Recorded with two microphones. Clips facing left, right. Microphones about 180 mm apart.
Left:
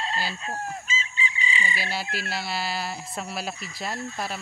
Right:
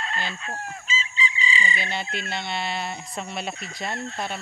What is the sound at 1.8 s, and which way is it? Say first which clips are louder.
Speech: even; 5° left (ahead or behind).